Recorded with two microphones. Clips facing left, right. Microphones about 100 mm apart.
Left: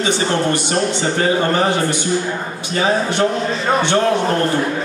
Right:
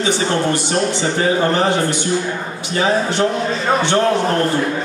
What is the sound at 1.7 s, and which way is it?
Speech, 15° left (ahead or behind).